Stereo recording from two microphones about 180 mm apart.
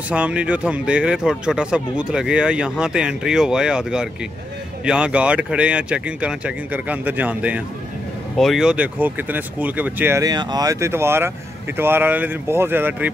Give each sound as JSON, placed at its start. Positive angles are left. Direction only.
{"t": 0.1, "sound": "speech", "side_deg": -5}